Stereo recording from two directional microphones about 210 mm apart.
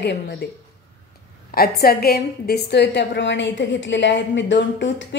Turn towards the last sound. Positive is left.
turn(degrees=60)  # may be behind; listen again after turning